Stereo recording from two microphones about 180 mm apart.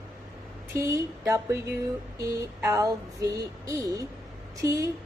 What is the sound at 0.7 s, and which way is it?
A woman's voice, 15° right (ahead or behind).